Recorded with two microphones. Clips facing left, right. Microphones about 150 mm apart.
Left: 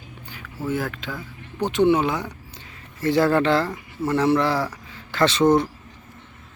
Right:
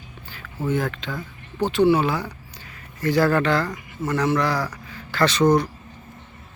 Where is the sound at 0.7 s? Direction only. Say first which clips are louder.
Right 2 dB; 5° left (ahead or behind); by 5.6 s 25° left (ahead or behind).